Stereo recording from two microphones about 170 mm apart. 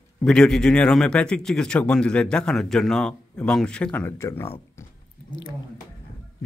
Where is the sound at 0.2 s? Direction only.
5° left (ahead or behind).